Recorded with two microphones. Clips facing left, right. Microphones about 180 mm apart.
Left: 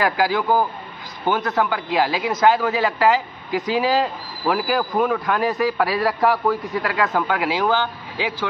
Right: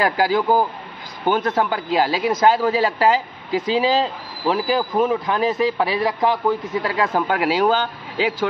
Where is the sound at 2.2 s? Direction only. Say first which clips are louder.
Right 1 dB; 35° right (ahead or behind); by 6.4 s 20° right (ahead or behind).